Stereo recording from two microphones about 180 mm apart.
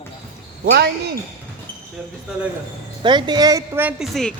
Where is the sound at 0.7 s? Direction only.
65° right (ahead or behind).